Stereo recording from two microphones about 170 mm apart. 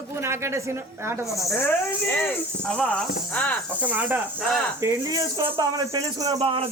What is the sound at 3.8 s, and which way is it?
Speech, 10° right (ahead or behind).